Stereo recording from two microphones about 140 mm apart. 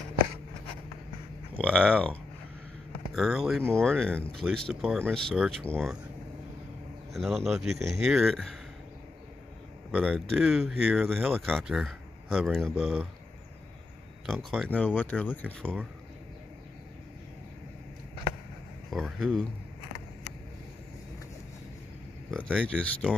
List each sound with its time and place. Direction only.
1.6 s speech: 10° left (ahead or behind)
7.2 s speech: centre (ahead or behind)
9.8 s speech: 5° left (ahead or behind)
14.2 s speech: centre (ahead or behind)
18.9 s speech: centre (ahead or behind)
22.3 s speech: 5° left (ahead or behind)